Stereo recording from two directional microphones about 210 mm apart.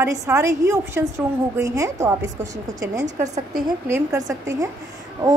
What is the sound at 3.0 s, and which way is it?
Speech, 35° right (ahead or behind).